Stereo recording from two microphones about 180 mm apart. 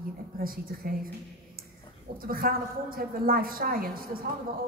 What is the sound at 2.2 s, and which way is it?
A woman's voice, 55° right (ahead or behind).